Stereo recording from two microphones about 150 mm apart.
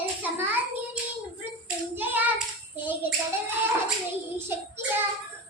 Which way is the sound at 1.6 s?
10° right (ahead or behind).